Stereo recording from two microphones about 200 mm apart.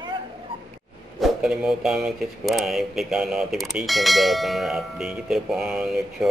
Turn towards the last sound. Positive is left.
turn(degrees=0)  # may be behind; listen again after turning